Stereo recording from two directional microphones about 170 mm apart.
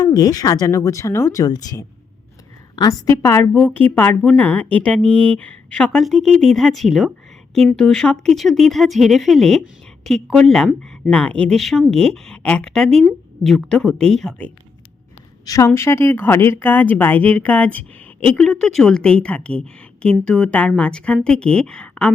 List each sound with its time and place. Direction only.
0.0 s speech: 20° left (ahead or behind)
3.1 s a woman's voice: 15° left (ahead or behind)
15.4 s a woman's voice: 20° left (ahead or behind)